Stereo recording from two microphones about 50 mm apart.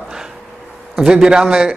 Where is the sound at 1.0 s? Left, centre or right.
Centre.